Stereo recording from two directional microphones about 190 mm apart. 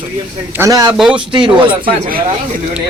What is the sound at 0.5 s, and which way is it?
Speech, 15° right (ahead or behind).